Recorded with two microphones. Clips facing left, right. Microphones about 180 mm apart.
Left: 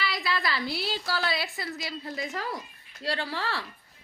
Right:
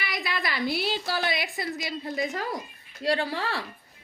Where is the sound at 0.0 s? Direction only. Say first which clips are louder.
Left 1 dB; 15° right (ahead or behind).